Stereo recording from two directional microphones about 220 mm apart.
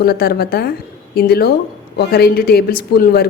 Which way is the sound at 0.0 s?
45° left (ahead or behind).